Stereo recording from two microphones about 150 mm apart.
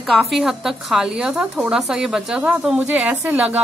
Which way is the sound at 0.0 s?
Centre (ahead or behind).